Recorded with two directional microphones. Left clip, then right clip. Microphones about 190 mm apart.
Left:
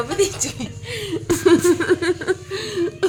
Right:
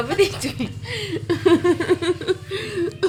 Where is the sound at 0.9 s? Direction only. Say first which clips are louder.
Left 1 dB; 20° left (ahead or behind).